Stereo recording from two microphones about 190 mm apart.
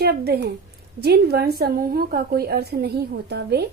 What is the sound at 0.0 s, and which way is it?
A woman's voice, 55° right (ahead or behind).